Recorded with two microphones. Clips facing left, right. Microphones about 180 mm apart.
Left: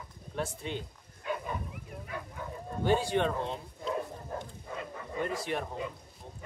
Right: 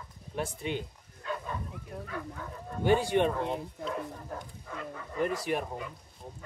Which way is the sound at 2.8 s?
15° right (ahead or behind).